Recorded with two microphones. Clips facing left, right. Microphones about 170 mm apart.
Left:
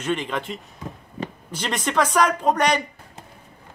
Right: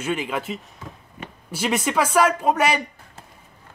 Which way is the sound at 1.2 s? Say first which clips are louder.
Left 8 dB; 35° left (ahead or behind).